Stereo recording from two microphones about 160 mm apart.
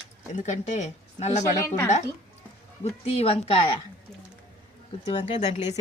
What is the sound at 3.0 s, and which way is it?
Speech, 40° left (ahead or behind).